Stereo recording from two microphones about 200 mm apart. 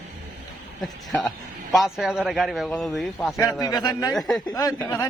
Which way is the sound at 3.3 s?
15° left (ahead or behind).